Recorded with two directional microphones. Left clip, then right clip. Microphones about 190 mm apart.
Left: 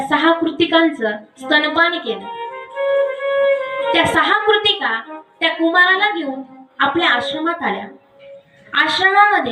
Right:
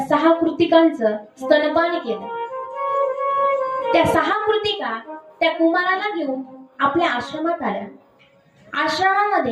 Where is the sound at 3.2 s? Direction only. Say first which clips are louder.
Left 3 dB; 50° right (ahead or behind).